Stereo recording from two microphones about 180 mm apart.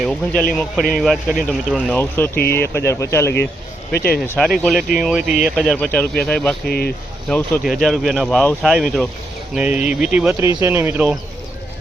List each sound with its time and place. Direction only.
0.0 s speech: centre (ahead or behind)
2.0 s speech: 10° left (ahead or behind)
3.9 s speech: 55° left (ahead or behind)
4.4 s speech: centre (ahead or behind)
6.7 s speech: 60° left (ahead or behind)
7.3 s speech: 10° left (ahead or behind); by 11.2 s 5° right (ahead or behind)